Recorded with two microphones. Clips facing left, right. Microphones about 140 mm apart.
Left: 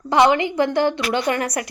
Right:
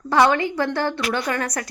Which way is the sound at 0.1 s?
15° left (ahead or behind).